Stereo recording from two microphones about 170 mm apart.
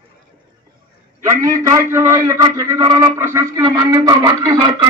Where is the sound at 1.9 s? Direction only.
15° right (ahead or behind).